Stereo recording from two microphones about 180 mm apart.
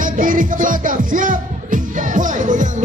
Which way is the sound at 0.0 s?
50° right (ahead or behind).